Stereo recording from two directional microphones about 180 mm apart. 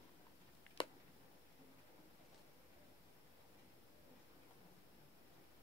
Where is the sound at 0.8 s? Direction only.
25° left (ahead or behind).